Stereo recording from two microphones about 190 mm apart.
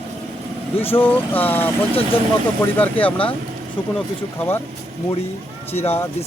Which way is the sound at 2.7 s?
10° left (ahead or behind).